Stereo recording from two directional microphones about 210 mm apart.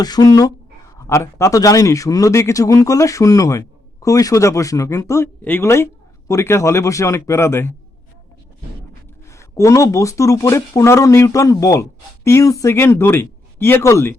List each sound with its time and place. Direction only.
0.0 s speech: 20° left (ahead or behind)
9.3 s speech: 15° left (ahead or behind)